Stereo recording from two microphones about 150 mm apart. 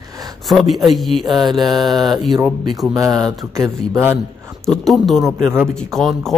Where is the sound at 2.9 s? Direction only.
20° right (ahead or behind).